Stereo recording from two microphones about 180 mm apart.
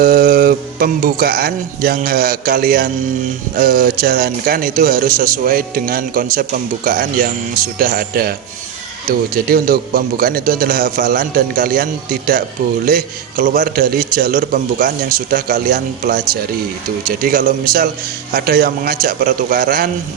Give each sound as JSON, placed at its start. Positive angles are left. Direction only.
{"t": 0.0, "sound": "a man's voice", "side_deg": -55}
{"t": 9.3, "sound": "a man's voice", "side_deg": -55}